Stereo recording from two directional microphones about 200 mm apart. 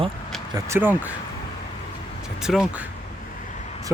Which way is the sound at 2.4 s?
Centre (ahead or behind).